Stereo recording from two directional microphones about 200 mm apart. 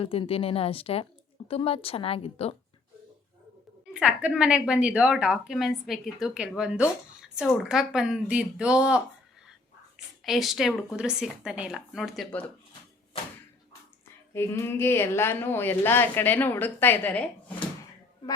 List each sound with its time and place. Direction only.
0.0 s a woman's voice: 30° left (ahead or behind)
3.9 s a woman's voice: 5° right (ahead or behind)
10.2 s a woman's voice: centre (ahead or behind)
14.3 s a woman's voice: 10° left (ahead or behind)